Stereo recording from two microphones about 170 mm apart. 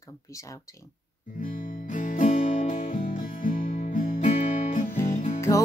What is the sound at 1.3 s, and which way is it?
Music, 50° left (ahead or behind).